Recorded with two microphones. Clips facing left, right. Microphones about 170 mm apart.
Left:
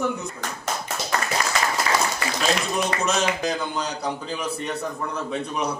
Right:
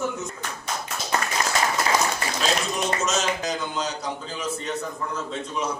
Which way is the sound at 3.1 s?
60° left (ahead or behind).